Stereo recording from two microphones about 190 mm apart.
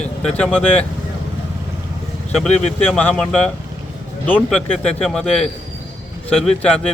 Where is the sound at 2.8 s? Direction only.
5° left (ahead or behind).